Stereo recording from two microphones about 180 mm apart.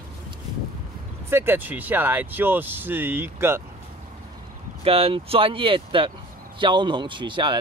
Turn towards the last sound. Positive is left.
turn(degrees=-25)  # may be behind; listen again after turning